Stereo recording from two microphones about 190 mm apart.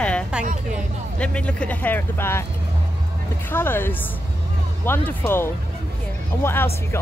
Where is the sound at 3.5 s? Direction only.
10° left (ahead or behind).